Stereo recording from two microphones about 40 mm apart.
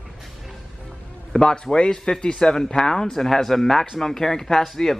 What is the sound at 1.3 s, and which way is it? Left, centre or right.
Speech, centre.